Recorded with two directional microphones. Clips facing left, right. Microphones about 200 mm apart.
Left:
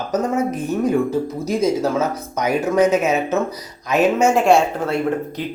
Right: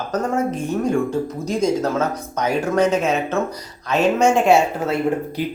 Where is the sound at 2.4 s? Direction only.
5° left (ahead or behind).